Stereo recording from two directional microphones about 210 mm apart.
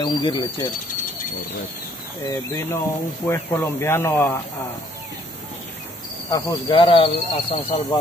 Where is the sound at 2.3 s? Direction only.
15° left (ahead or behind).